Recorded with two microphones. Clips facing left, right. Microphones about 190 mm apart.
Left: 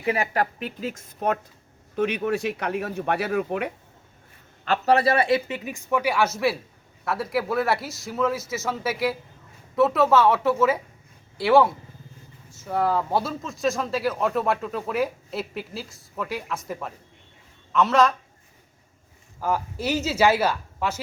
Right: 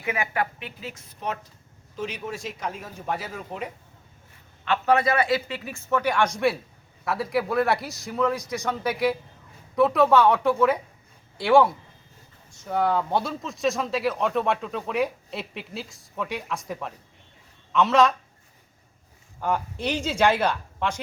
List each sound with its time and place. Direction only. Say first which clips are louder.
0.0 s a woman's voice: left 3 dB; 35° left (ahead or behind)
2.0 s speech: left 8 dB; 60° left (ahead or behind)
4.6 s a man's voice: left 2 dB; 35° left (ahead or behind); by 18.1 s centre (ahead or behind)
19.4 s speech: left 1 dB; 5° left (ahead or behind)